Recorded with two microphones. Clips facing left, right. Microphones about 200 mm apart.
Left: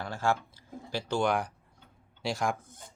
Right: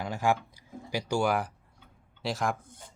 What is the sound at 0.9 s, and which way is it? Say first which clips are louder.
Speech: right 1 dB; 15° right (ahead or behind).